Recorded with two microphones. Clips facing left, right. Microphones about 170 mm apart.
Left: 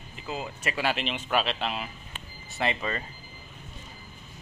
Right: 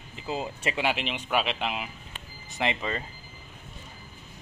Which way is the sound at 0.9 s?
10° right (ahead or behind).